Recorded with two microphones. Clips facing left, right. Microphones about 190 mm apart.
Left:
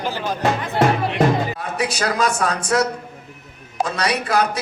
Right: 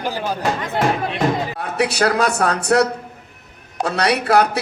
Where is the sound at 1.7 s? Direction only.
65° right (ahead or behind).